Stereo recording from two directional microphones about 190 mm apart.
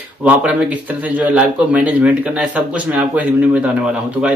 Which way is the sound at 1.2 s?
5° right (ahead or behind).